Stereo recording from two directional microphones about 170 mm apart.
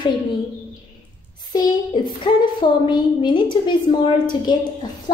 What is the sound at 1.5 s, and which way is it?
A child's voice, 25° left (ahead or behind).